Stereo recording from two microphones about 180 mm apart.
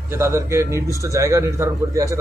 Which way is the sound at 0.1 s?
15° right (ahead or behind).